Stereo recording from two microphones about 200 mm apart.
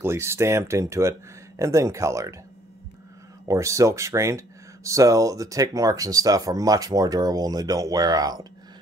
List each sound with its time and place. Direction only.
0.0 s speech: 15° right (ahead or behind)
3.4 s speech: 15° right (ahead or behind)